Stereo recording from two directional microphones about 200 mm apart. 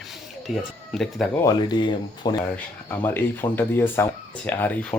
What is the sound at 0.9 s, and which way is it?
Speech, centre (ahead or behind).